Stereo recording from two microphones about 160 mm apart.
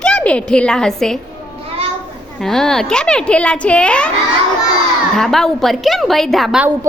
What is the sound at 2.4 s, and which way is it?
Speech, 5° left (ahead or behind).